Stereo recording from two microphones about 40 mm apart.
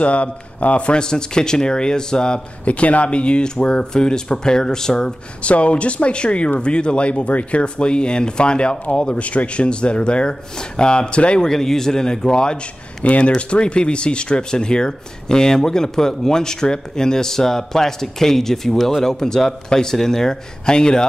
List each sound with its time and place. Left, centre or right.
0.0 s speech: left
0.9 s speech: centre
2.6 s speech: left; by 5.1 s centre
5.4 s speech: left
11.4 s speech: centre
13.0 s speech: left